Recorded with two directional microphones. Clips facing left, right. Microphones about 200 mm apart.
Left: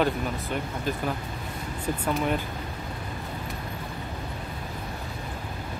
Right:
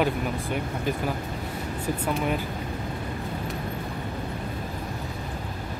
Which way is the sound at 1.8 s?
10° right (ahead or behind).